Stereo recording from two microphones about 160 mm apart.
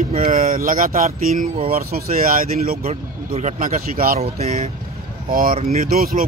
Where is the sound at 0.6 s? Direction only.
60° right (ahead or behind).